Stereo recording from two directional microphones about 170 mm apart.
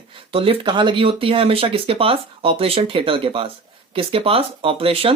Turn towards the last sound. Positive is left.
turn(degrees=-35)  # may be behind; listen again after turning